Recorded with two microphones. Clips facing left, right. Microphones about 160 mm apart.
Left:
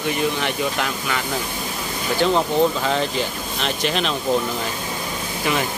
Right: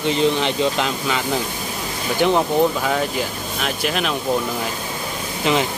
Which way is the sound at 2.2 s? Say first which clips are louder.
Right 1 dB; 15° right (ahead or behind).